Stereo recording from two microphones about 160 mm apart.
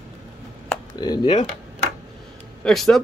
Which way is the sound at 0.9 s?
25° left (ahead or behind).